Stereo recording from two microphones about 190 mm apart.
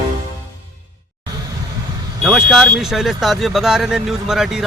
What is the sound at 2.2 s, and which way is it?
A man's voice, centre (ahead or behind).